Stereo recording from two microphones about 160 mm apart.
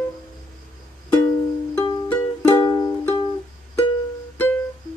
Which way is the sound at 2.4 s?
25° left (ahead or behind).